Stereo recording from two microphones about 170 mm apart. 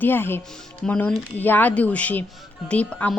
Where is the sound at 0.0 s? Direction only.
10° left (ahead or behind).